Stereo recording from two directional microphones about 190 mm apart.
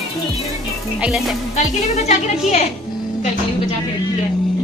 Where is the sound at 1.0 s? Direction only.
Centre (ahead or behind).